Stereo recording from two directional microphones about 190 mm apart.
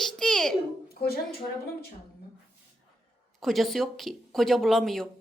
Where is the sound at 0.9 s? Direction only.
55° left (ahead or behind).